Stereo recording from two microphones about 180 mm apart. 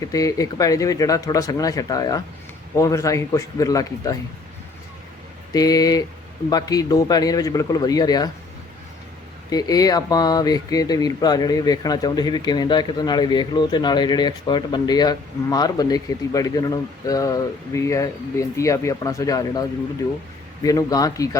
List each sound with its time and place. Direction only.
0.0 s a man's voice: 20° left (ahead or behind)
5.5 s speech: 20° left (ahead or behind)
9.5 s speech: 20° left (ahead or behind)
20.7 s speech: 20° left (ahead or behind)